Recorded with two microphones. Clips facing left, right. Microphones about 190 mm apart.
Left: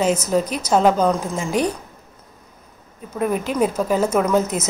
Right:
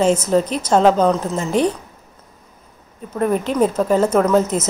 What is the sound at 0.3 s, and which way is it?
Speech, 10° left (ahead or behind).